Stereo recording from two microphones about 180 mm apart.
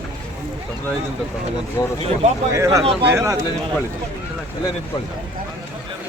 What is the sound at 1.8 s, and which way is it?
Speech, 20° left (ahead or behind).